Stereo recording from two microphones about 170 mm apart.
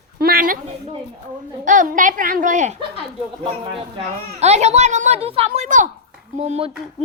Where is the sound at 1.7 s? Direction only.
50° right (ahead or behind).